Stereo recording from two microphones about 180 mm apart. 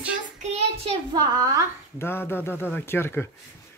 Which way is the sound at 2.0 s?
10° left (ahead or behind).